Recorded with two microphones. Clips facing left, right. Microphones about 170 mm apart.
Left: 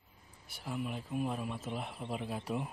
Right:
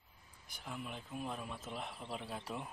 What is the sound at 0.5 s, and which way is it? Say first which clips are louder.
Speech: left 7 dB; 5° left (ahead or behind).